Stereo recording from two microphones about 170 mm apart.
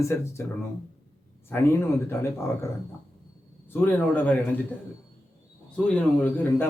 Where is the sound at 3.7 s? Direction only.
10° left (ahead or behind).